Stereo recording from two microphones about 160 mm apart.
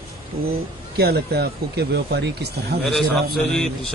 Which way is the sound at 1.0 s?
80° right.